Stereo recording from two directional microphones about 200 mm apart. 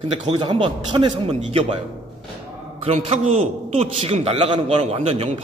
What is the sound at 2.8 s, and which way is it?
A man's voice, 30° right (ahead or behind).